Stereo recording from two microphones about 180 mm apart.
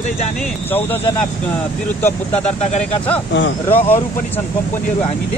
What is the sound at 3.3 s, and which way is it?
Speech, 80° left.